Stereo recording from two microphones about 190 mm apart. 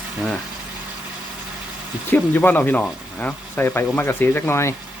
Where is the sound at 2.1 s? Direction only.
10° left (ahead or behind).